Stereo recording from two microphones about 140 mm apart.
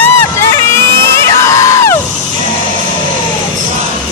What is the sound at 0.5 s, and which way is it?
Music, 20° left (ahead or behind).